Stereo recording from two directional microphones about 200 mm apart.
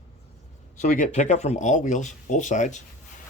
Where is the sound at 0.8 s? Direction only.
40° left (ahead or behind).